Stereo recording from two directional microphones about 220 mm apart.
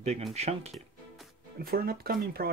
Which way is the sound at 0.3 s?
30° right (ahead or behind).